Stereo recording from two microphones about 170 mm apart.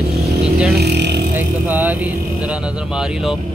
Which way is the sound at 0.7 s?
80° right.